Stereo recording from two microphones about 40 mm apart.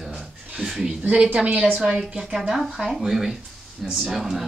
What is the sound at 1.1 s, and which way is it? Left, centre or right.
A woman's voice, right.